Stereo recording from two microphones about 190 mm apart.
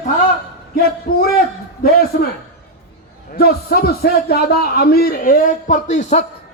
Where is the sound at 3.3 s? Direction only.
55° left (ahead or behind); by 6.2 s 40° left (ahead or behind).